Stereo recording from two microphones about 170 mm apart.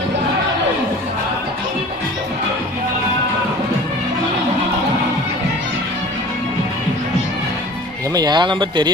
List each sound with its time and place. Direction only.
8.1 s speech: 25° right (ahead or behind)